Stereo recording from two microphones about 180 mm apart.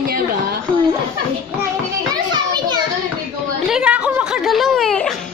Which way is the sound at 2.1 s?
25° right (ahead or behind).